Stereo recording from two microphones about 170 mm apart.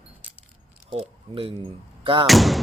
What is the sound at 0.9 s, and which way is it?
Speech, 30° right (ahead or behind).